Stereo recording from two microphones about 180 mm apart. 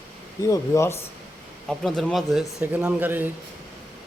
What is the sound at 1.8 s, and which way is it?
Speech, centre (ahead or behind).